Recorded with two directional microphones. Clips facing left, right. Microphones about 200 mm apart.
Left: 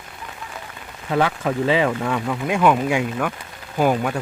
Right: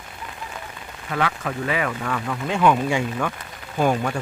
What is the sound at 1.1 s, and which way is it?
Speech, 30° left (ahead or behind).